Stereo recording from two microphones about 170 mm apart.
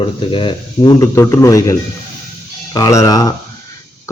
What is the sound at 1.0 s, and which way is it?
A man's voice, 15° left (ahead or behind).